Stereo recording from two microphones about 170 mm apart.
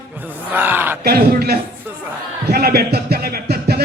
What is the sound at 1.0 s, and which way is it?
Speech, 65° right (ahead or behind).